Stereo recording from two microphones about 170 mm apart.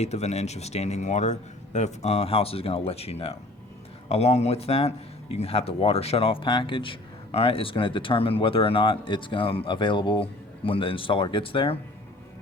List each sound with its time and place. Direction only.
0.0 s speech: 40° left (ahead or behind)